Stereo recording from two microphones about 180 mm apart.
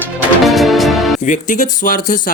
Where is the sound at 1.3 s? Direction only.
45° left (ahead or behind).